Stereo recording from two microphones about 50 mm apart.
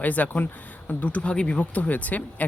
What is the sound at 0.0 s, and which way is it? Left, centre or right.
Speech, left.